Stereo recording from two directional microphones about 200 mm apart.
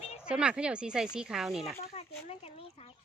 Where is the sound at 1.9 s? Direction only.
30° left (ahead or behind).